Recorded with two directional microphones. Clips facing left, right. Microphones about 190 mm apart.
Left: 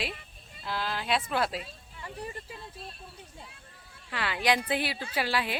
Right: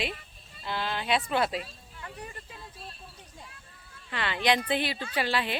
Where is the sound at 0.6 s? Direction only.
Centre (ahead or behind).